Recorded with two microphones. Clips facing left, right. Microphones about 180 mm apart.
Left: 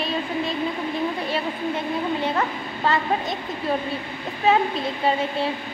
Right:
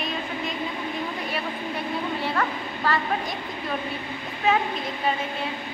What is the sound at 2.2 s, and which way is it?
Speech, 20° left (ahead or behind).